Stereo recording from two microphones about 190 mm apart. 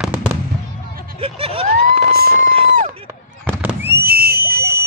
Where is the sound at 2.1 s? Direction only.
55° right (ahead or behind).